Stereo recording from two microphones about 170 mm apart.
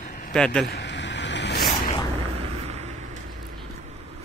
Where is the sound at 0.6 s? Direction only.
80° left.